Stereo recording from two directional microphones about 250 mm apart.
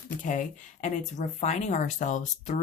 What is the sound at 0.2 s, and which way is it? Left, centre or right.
Speech, left.